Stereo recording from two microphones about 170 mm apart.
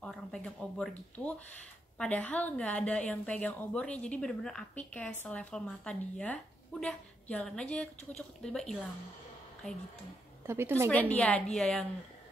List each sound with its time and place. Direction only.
0.0 s a woman's voice: 5° left (ahead or behind)
10.4 s a woman's voice: 15° right (ahead or behind)
10.9 s a woman's voice: 10° left (ahead or behind)